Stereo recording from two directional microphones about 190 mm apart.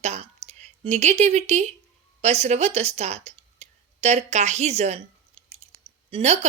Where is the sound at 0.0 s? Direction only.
35° right (ahead or behind).